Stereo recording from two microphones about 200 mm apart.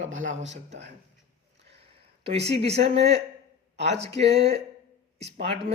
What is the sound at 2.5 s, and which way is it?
Speech, 30° right (ahead or behind).